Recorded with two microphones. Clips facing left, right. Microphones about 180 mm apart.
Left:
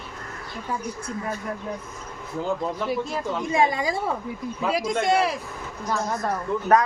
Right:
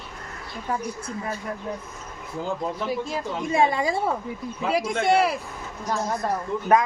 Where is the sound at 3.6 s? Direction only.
30° right (ahead or behind).